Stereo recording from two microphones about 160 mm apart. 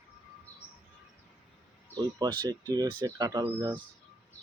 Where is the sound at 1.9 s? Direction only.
25° right (ahead or behind).